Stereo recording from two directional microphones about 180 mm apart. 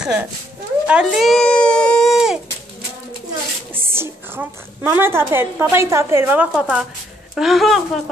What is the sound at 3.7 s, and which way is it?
A woman's voice, 15° right (ahead or behind).